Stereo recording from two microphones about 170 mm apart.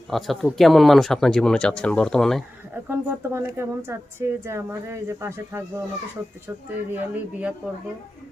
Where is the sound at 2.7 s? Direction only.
10° right (ahead or behind).